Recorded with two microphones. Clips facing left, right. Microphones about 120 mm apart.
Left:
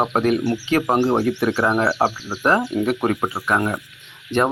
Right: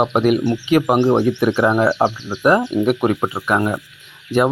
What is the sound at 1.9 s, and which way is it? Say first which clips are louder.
Insect: right 3 dB; 5° left (ahead or behind).